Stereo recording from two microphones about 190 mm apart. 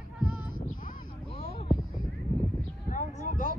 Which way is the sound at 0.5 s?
45° left (ahead or behind).